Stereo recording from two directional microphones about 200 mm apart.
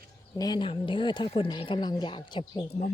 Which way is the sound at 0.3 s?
20° left (ahead or behind).